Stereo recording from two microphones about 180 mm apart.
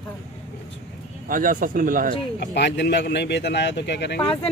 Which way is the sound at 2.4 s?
70° left (ahead or behind).